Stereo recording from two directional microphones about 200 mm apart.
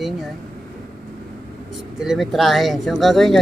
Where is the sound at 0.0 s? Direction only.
Centre (ahead or behind).